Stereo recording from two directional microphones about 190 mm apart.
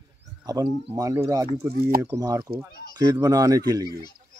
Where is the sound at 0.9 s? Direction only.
15° right (ahead or behind).